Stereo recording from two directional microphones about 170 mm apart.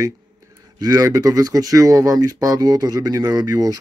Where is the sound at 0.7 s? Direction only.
20° right (ahead or behind).